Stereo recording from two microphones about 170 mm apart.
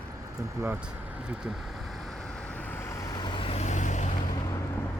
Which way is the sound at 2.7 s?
20° left (ahead or behind).